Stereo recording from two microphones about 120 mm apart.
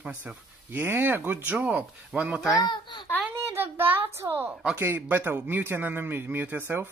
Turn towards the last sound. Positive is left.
turn(degrees=-15)  # may be behind; listen again after turning